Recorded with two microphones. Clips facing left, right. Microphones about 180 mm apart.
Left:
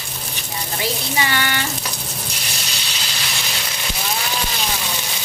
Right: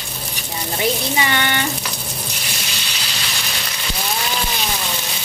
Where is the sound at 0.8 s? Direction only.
25° right (ahead or behind).